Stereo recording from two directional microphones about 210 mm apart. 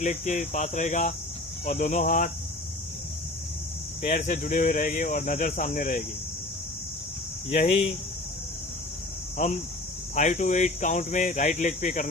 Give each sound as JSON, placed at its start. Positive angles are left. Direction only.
{"t": 0.0, "sound": "speech", "side_deg": 35}
{"t": 4.0, "sound": "speech", "side_deg": 35}
{"t": 7.5, "sound": "speech", "side_deg": 35}
{"t": 9.4, "sound": "speech", "side_deg": 35}